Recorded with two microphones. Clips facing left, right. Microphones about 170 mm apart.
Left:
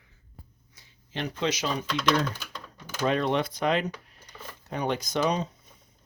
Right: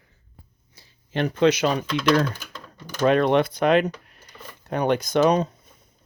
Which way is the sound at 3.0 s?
60° right (ahead or behind).